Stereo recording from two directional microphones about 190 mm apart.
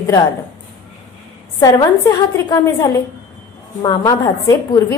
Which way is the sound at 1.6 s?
20° left (ahead or behind).